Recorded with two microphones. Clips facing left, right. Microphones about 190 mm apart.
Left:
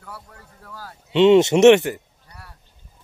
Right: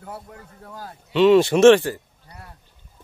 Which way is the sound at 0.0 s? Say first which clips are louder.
Right 4 dB; 25° right (ahead or behind).